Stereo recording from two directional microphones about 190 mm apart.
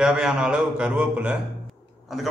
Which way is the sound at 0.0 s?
Centre (ahead or behind).